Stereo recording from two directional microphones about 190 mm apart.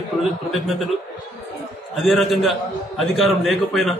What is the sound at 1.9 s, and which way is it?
A man's voice, centre (ahead or behind).